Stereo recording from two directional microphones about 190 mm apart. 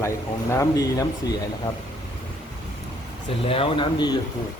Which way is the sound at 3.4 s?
30° left (ahead or behind).